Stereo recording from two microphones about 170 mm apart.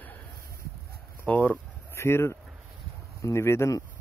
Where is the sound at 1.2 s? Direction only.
10° left (ahead or behind).